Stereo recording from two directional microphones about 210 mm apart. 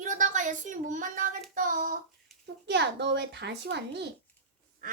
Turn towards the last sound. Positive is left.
turn(degrees=-40)  # may be behind; listen again after turning